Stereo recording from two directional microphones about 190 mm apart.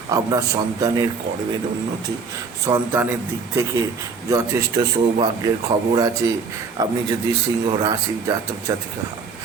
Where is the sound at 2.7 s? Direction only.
10° right (ahead or behind).